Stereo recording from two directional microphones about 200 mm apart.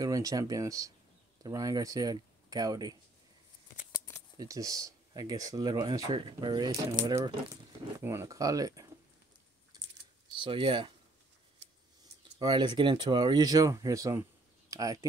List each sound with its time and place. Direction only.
0.0 s speech: 15° right (ahead or behind)
4.4 s speech: 15° right (ahead or behind)
10.4 s speech: 25° right (ahead or behind)
12.4 s speech: 20° right (ahead or behind)